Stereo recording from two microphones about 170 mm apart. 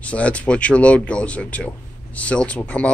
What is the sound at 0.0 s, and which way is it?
Speech, 5° left (ahead or behind).